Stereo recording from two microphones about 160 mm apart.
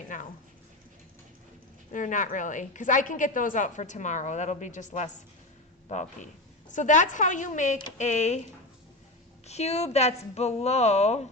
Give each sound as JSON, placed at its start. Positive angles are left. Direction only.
{"t": 0.1, "sound": "a woman's voice", "side_deg": 55}
{"t": 1.9, "sound": "a woman's voice", "side_deg": 55}
{"t": 9.5, "sound": "a woman's voice", "side_deg": 40}